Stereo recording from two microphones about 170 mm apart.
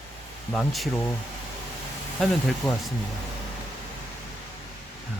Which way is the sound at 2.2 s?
Centre (ahead or behind).